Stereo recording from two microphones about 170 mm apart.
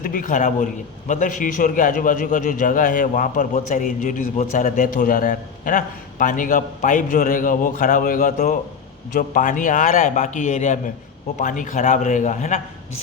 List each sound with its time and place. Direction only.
0.0 s a man's voice: 55° left (ahead or behind)